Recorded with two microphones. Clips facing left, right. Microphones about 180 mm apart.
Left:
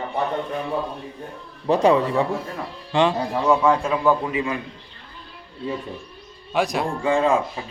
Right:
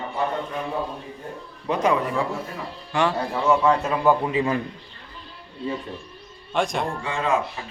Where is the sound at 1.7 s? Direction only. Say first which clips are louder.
Left 5 dB; 30° left (ahead or behind).